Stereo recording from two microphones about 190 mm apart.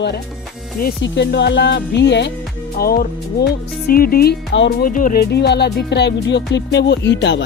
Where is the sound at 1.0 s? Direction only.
65° left (ahead or behind).